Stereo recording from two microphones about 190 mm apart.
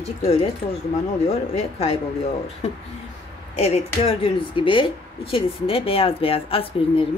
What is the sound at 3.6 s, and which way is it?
Speech, 35° left (ahead or behind).